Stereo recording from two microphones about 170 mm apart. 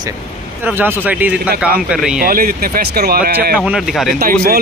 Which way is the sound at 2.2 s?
60° right (ahead or behind).